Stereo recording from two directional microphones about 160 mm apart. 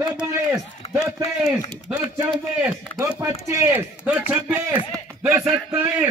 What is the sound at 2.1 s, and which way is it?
A man's voice, 10° right (ahead or behind).